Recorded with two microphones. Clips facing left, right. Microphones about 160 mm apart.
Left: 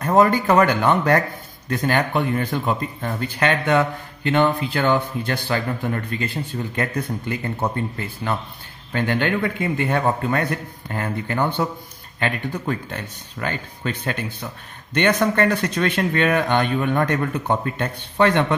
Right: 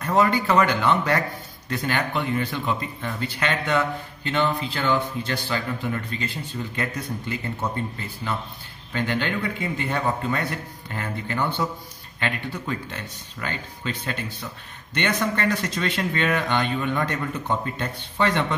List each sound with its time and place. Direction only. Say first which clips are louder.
0.0 s speech: left 4 dB; 50° left (ahead or behind)
8.9 s speech: left 4 dB; 50° left (ahead or behind)